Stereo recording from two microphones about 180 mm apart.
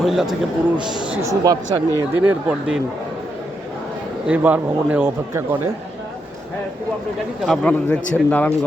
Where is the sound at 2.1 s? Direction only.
5° right (ahead or behind).